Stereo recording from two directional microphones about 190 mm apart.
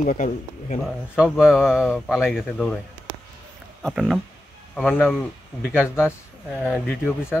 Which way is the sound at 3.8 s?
5° right (ahead or behind).